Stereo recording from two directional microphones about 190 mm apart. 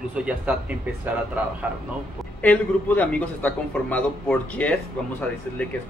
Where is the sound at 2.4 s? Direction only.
5° left (ahead or behind).